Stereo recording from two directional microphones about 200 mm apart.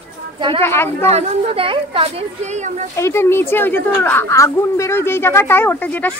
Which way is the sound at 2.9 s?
15° left (ahead or behind).